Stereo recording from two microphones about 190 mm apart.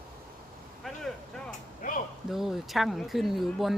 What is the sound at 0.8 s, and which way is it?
Vehicle, centre (ahead or behind).